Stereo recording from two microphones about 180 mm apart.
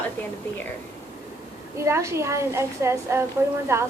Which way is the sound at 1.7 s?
15° right (ahead or behind).